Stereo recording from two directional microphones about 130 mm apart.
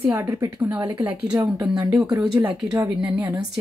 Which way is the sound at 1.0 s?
15° right (ahead or behind).